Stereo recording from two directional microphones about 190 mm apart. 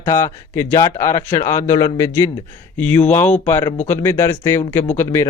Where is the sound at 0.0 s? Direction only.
15° left (ahead or behind).